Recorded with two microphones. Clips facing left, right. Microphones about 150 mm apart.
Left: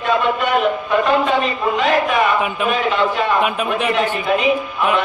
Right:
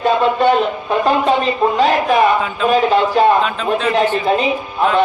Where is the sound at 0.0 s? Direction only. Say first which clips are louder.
Right 4 dB; 30° right (ahead or behind).